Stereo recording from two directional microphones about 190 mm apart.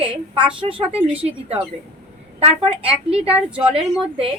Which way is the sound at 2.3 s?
30° right (ahead or behind).